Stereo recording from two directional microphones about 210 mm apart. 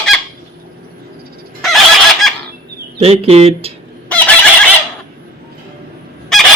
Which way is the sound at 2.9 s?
30° right (ahead or behind).